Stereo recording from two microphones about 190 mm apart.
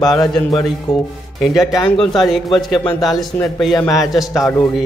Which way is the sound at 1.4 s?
Centre (ahead or behind).